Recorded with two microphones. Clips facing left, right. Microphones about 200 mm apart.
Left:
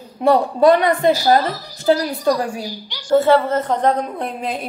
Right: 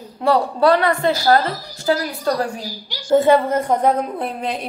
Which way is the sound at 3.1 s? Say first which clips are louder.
Even; 15° right (ahead or behind).